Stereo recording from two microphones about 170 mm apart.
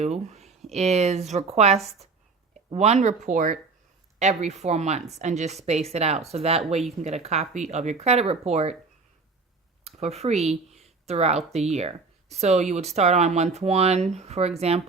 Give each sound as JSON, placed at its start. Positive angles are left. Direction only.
{"t": 0.0, "sound": "speech", "side_deg": -40}
{"t": 9.8, "sound": "speech", "side_deg": -40}